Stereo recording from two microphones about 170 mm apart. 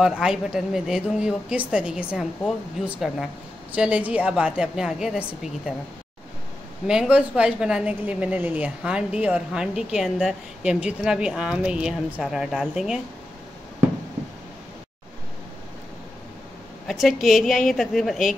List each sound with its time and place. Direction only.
0.0 s a woman's voice: 5° right (ahead or behind)
6.9 s a woman's voice: 5° right (ahead or behind)
16.8 s a woman's voice: centre (ahead or behind)